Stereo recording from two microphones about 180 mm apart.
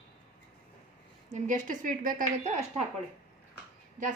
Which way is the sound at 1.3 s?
45° right (ahead or behind).